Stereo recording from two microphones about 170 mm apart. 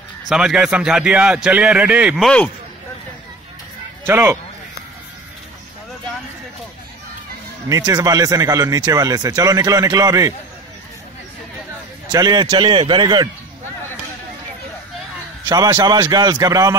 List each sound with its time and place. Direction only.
0.3 s a man's voice: 5° right (ahead or behind)
4.0 s speech: 15° right (ahead or behind)
7.7 s speech: 20° right (ahead or behind)
12.1 s speech: 25° right (ahead or behind)
15.4 s speech: 25° right (ahead or behind)